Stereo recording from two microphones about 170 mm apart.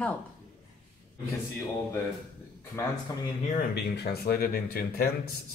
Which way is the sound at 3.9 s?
70° left (ahead or behind).